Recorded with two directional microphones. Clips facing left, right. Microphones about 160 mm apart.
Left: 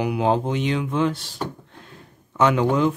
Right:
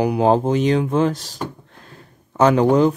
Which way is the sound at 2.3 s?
40° right (ahead or behind).